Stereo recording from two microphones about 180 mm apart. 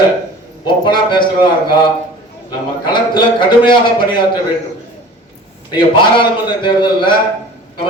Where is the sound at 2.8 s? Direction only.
25° left (ahead or behind).